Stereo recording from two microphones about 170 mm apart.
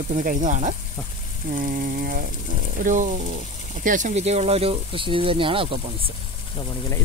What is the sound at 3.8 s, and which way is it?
Speech, 50° right (ahead or behind).